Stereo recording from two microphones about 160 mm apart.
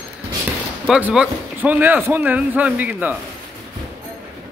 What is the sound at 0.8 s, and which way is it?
Speech, 5° right (ahead or behind).